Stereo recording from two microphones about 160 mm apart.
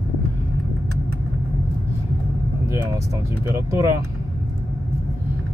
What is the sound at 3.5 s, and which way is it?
Speech, 15° right (ahead or behind).